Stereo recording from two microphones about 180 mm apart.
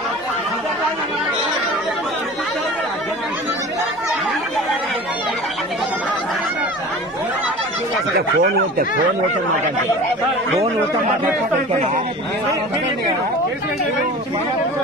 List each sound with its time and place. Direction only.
8.4 s speech: 55° right (ahead or behind)